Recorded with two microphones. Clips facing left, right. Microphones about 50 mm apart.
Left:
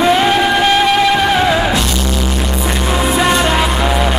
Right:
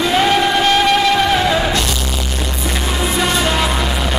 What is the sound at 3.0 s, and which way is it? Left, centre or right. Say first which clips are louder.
Music: left 4 dB; centre.